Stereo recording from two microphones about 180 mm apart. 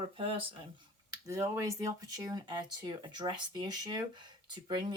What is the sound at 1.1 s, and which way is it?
Speech, 15° right (ahead or behind).